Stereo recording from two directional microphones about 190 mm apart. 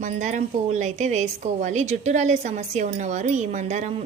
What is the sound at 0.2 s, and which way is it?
A woman's voice, 40° right (ahead or behind).